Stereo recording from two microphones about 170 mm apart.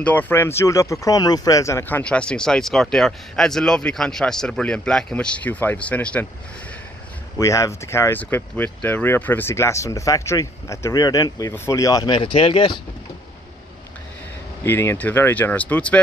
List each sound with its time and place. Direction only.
0.0 s speech: 10° left (ahead or behind)
7.3 s speech: 20° left (ahead or behind)
14.6 s speech: 15° left (ahead or behind)